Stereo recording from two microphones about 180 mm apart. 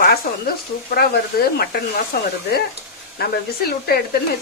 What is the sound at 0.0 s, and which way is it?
Speech, 55° left (ahead or behind).